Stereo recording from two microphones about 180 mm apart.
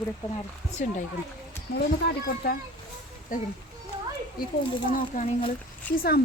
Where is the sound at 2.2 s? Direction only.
60° left (ahead or behind).